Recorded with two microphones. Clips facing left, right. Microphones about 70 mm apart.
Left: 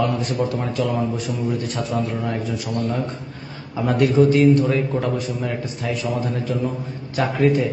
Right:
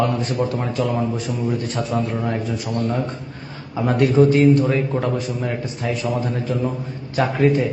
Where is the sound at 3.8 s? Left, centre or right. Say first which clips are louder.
Right 1 dB; right.